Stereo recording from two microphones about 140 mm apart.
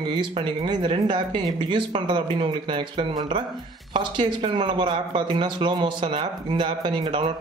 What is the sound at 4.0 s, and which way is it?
Speech, 35° right (ahead or behind).